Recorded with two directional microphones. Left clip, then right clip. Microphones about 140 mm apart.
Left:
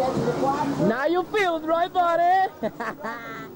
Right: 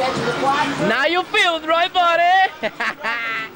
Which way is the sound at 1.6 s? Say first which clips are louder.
Right 5 dB; 25° right (ahead or behind).